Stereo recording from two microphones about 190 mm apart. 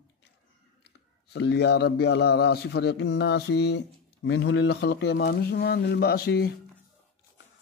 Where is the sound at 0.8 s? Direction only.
60° left (ahead or behind).